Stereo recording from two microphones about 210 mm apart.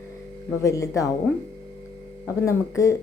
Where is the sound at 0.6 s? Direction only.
15° left (ahead or behind).